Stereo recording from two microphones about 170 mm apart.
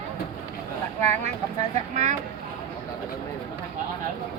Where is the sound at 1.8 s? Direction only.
45° right (ahead or behind).